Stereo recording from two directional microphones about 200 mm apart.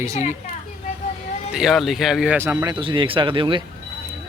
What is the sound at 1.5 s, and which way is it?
Speech, centre (ahead or behind).